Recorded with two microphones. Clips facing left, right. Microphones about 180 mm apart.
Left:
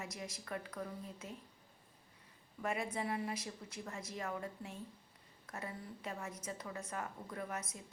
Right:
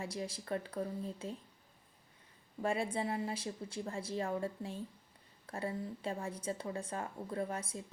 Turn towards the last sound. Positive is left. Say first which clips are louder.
# right 5 dB
turn(degrees=-30)  # may be behind; listen again after turning